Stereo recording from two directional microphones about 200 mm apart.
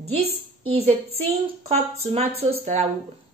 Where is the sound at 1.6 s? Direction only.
30° right (ahead or behind).